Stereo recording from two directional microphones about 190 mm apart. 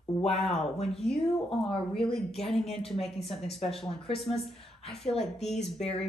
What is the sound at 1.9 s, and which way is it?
Speech, 5° left (ahead or behind).